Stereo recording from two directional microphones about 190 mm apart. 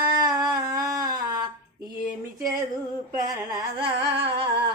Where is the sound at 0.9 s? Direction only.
20° right (ahead or behind).